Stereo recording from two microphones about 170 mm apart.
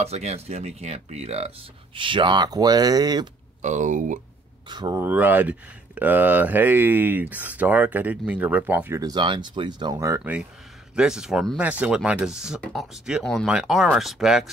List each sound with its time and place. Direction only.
0.0 s speech: 40° right (ahead or behind); by 3.3 s 25° right (ahead or behind)
3.6 s speech: 45° right (ahead or behind)
4.6 s speech: 25° right (ahead or behind)
5.0 s speech: 10° right (ahead or behind)